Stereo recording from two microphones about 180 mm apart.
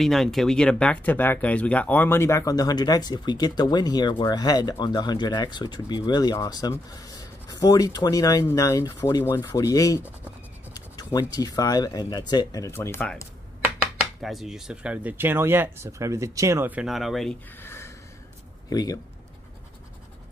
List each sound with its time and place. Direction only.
0.0 s speech: centre (ahead or behind)
14.2 s speech: centre (ahead or behind)
17.6 s a sound: 15° left (ahead or behind)
18.7 s speech: 20° left (ahead or behind)